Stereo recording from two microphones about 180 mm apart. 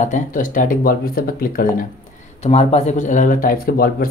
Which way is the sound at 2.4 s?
35° left (ahead or behind).